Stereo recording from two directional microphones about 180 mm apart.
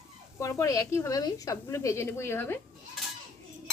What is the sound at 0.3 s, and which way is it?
A woman's voice, 15° left (ahead or behind).